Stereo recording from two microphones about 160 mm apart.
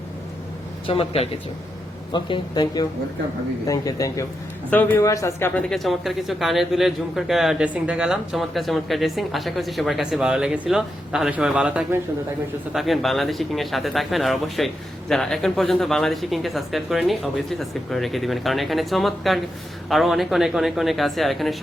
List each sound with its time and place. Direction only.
0.9 s speech: 35° left (ahead or behind); by 5.6 s 15° left (ahead or behind)
5.6 s speech: centre (ahead or behind)